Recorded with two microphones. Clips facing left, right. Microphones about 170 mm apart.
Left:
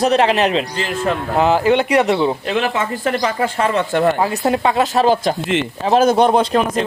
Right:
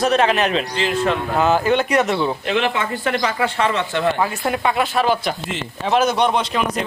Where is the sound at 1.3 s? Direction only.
25° left (ahead or behind); by 4.1 s 45° left (ahead or behind).